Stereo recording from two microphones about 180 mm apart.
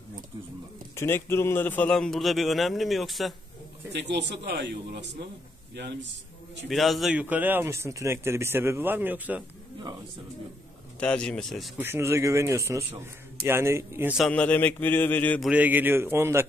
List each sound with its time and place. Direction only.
0.9 s a man's voice: 15° left (ahead or behind)
3.9 s a man's voice: 70° right (ahead or behind)
6.7 s a man's voice: centre (ahead or behind)
11.0 s a man's voice: 5° left (ahead or behind)
11.8 s a man's voice: 15° right (ahead or behind)
14.1 s a man's voice: 5° left (ahead or behind)
15.4 s a man's voice: 10° right (ahead or behind)